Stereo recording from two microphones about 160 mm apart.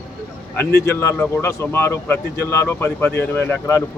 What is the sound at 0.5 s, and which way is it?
Speech, 15° left (ahead or behind).